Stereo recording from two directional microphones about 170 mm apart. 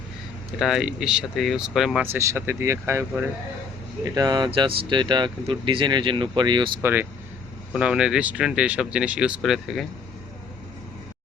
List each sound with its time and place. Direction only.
0.6 s speech: centre (ahead or behind)
2.1 s speech: 15° right (ahead or behind)
6.8 s speech: 10° right (ahead or behind)